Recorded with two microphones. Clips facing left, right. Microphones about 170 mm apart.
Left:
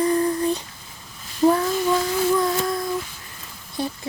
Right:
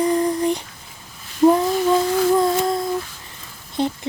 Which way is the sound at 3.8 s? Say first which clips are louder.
Right 5 dB; 20° right (ahead or behind).